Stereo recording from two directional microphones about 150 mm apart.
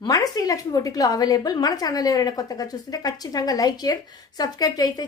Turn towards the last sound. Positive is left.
turn(degrees=25)  # may be behind; listen again after turning